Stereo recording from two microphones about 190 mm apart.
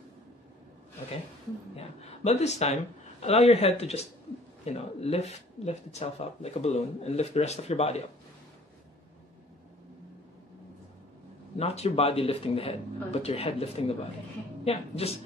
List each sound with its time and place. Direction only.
1.8 s speech: 35° left (ahead or behind)
11.5 s speech: 35° left (ahead or behind)